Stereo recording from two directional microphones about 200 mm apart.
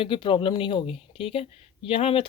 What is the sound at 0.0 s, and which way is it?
Speech, 25° left (ahead or behind).